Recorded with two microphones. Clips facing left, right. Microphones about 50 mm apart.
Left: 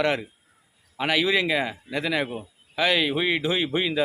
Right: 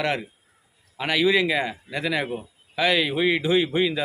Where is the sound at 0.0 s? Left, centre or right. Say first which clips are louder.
Left 2 dB; centre.